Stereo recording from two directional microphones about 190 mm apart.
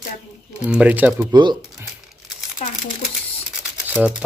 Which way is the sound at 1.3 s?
25° right (ahead or behind).